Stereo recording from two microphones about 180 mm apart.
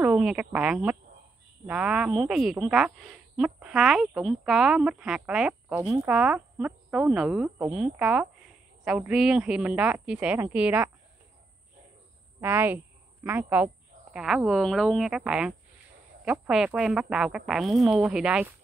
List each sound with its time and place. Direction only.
0.0 s a woman's voice: 5° right (ahead or behind)
12.4 s a woman's voice: 10° right (ahead or behind)